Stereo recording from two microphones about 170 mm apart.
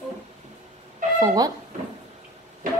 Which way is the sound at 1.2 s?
20° right (ahead or behind).